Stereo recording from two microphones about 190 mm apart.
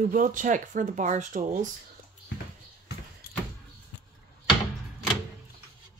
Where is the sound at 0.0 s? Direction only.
45° right (ahead or behind).